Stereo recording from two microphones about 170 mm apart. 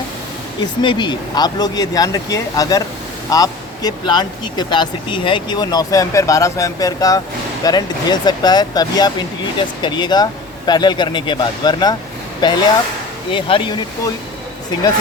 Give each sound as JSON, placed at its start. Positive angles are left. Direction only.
{"t": 0.6, "sound": "speech", "side_deg": 25}